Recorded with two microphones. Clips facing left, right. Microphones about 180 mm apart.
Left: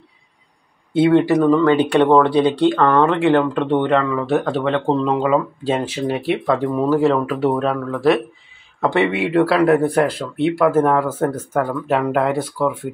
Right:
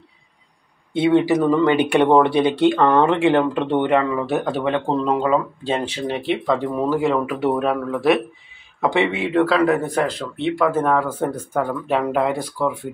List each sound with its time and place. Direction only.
0.9 s speech: centre (ahead or behind)
1.6 s speech: 15° right (ahead or behind); by 7.0 s 5° left (ahead or behind)
7.5 s speech: 10° right (ahead or behind)
8.9 s speech: 5° left (ahead or behind)